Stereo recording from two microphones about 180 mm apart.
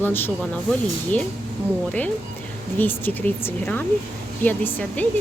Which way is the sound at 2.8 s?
10° left (ahead or behind).